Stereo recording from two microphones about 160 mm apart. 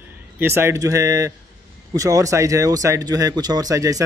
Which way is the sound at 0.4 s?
15° right (ahead or behind).